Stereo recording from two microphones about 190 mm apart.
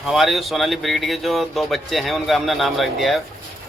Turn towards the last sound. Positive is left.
turn(degrees=0)  # may be behind; listen again after turning